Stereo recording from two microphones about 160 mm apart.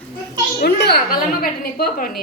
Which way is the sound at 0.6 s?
90° left.